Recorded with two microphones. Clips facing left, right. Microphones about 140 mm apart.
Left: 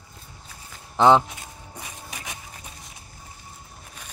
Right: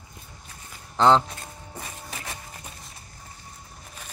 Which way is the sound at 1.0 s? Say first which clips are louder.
Left 2 dB; 15° left (ahead or behind).